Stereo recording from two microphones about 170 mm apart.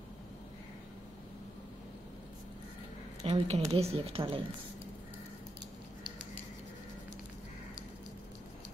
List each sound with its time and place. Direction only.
3.3 s a woman's voice: 35° right (ahead or behind)